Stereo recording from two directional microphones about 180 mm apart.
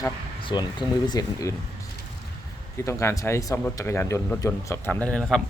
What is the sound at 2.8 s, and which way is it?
Speech, 15° left (ahead or behind).